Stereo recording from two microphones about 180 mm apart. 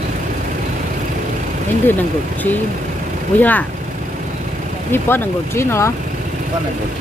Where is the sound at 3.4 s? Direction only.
10° left (ahead or behind).